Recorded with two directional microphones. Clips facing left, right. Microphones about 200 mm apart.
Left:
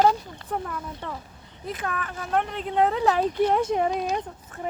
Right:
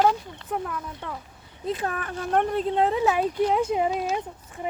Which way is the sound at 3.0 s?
5° right (ahead or behind).